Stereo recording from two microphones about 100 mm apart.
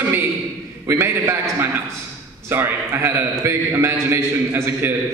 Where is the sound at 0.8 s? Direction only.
25° right (ahead or behind).